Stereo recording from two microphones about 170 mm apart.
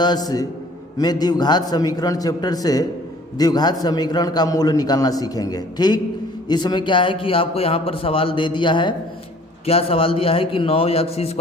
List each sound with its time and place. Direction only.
0.9 s a man's voice: 25° left (ahead or behind)